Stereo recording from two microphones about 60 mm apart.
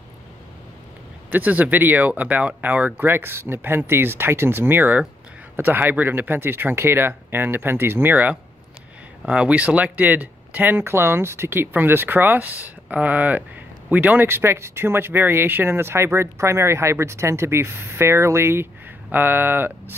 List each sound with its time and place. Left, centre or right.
1.3 s speech: right
9.2 s speech: right